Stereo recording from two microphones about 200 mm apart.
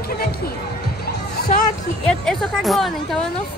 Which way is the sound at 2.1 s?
Centre (ahead or behind).